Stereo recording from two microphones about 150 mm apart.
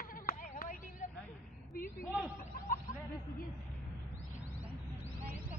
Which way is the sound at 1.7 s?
75° left (ahead or behind).